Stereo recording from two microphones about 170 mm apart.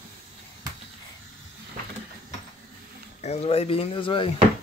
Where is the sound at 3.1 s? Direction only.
35° left (ahead or behind).